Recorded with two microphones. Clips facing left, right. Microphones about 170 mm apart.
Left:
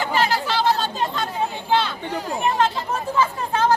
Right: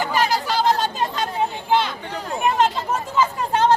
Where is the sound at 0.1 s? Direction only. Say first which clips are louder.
Even; 15° right (ahead or behind).